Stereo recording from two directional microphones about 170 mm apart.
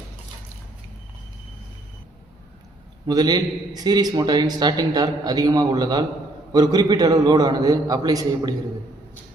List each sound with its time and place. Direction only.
3.1 s a man's voice: 25° right (ahead or behind)